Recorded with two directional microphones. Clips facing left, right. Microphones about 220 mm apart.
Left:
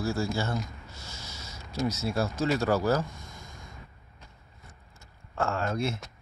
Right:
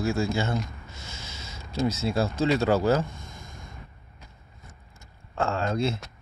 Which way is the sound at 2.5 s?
25° right (ahead or behind).